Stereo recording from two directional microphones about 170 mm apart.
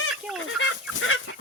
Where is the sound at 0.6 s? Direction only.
90° left.